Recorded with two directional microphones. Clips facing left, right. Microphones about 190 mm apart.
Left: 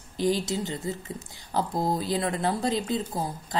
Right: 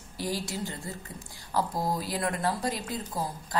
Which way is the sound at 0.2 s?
20° left (ahead or behind).